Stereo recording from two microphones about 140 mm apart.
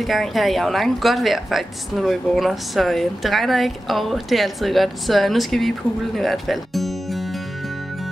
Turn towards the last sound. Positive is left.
turn(degrees=0)  # may be behind; listen again after turning